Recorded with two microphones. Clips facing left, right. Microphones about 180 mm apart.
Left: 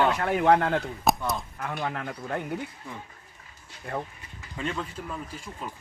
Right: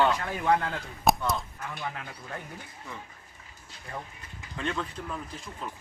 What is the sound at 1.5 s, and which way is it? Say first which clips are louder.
Speech: left 5 dB; 60° left (ahead or behind).